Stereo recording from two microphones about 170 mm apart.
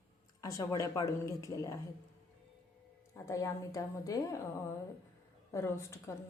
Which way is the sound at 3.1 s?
15° left (ahead or behind).